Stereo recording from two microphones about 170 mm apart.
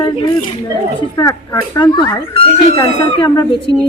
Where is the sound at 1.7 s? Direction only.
25° left (ahead or behind).